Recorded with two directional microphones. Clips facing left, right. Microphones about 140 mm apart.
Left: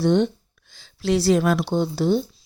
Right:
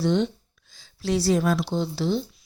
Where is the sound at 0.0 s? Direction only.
50° left (ahead or behind).